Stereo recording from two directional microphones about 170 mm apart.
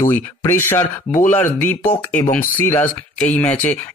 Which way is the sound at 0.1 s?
15° left (ahead or behind).